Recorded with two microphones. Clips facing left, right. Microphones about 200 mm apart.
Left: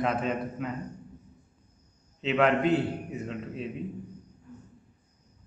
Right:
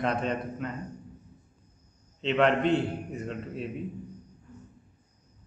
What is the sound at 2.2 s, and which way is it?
A man's voice, 5° left (ahead or behind).